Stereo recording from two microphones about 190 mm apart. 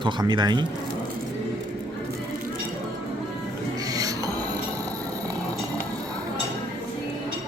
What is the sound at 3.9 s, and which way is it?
Music, 20° right (ahead or behind).